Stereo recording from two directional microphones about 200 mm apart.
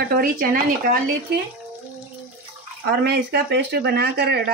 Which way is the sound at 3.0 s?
55° right (ahead or behind).